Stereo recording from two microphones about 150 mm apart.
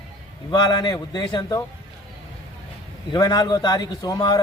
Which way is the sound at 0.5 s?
30° left (ahead or behind).